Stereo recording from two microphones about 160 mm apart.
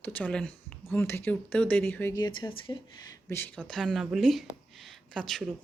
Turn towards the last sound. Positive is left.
turn(degrees=0)  # may be behind; listen again after turning